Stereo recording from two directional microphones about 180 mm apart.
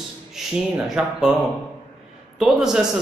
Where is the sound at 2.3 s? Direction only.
Centre (ahead or behind).